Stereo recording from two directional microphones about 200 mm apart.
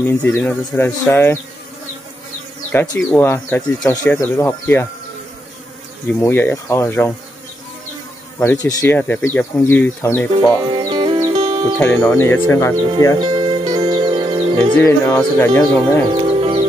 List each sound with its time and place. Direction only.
0.0 s speech: 5° left (ahead or behind)
2.7 s speech: 10° left (ahead or behind)
6.1 s speech: 10° left (ahead or behind)
8.4 s speech: 15° left (ahead or behind)
10.7 s music: 25° right (ahead or behind)
11.3 s music: 35° right (ahead or behind)
11.8 s speech: 10° left (ahead or behind)
12.7 s speech: 25° right (ahead or behind)
13.2 s music: 20° right (ahead or behind)
14.8 s speech: 15° left (ahead or behind)
16.1 s music: 25° right (ahead or behind)